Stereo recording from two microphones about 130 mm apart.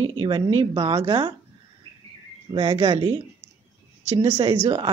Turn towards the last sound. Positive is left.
turn(degrees=-35)  # may be behind; listen again after turning